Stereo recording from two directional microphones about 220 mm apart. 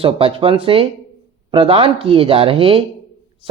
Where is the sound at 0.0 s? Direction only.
25° right (ahead or behind).